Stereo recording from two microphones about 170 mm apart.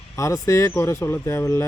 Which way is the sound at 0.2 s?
15° left (ahead or behind).